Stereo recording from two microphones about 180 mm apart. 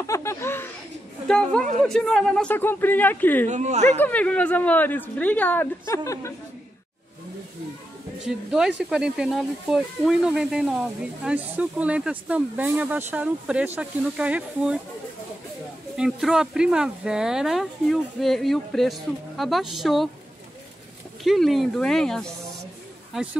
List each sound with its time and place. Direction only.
0.0 s chuckle: 15° left (ahead or behind)
1.2 s a woman's voice: 5° left (ahead or behind)
3.4 s speech: 40° right (ahead or behind)
3.9 s a woman's voice: 10° left (ahead or behind)
8.3 s speech: 5° right (ahead or behind)
16.0 s speech: 5° right (ahead or behind)
21.2 s speech: centre (ahead or behind)